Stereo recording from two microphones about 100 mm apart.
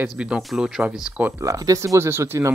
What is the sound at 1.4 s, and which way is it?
Speech, 35° right (ahead or behind).